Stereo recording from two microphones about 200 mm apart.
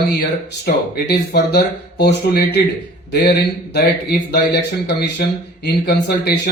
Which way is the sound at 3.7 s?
55° left (ahead or behind).